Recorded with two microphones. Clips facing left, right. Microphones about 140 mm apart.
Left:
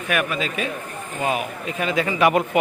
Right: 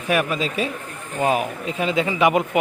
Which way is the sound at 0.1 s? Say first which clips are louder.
Right 3 dB; 30° right (ahead or behind).